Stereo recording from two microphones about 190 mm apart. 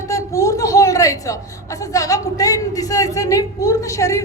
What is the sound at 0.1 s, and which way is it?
A woman's voice, 15° left (ahead or behind).